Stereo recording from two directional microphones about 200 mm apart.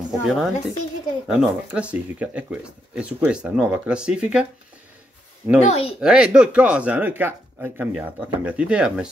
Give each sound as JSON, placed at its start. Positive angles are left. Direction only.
{"t": 0.3, "sound": "speech", "side_deg": 0}
{"t": 5.6, "sound": "speech", "side_deg": 30}
{"t": 5.9, "sound": "speech", "side_deg": -5}